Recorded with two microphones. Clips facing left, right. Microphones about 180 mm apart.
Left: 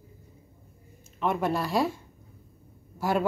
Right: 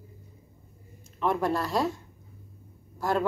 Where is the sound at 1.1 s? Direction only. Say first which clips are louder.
Even; 5° left (ahead or behind).